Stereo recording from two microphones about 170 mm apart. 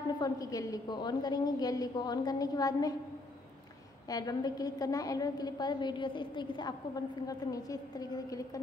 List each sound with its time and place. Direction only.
0.2 s a woman's voice: 20° left (ahead or behind)
4.1 s a woman's voice: 20° left (ahead or behind)